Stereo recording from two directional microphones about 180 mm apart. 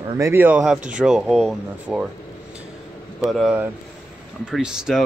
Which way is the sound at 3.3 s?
5° right (ahead or behind).